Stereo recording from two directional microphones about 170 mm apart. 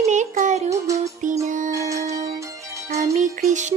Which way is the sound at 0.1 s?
45° right (ahead or behind).